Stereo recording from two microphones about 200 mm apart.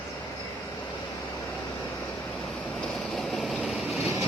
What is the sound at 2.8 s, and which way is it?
Vehicle, centre (ahead or behind).